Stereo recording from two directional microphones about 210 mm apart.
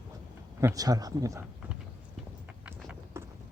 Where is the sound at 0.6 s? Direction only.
15° right (ahead or behind).